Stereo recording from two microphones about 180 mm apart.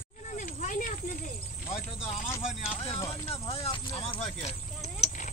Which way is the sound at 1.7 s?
35° left (ahead or behind).